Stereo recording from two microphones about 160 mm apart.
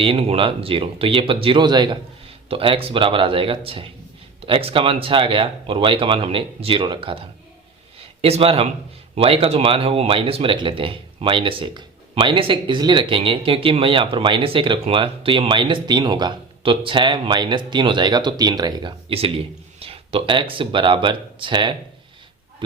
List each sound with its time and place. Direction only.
0.0 s speech: 35° right (ahead or behind)